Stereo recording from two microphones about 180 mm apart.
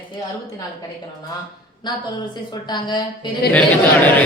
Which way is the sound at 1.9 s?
25° left (ahead or behind).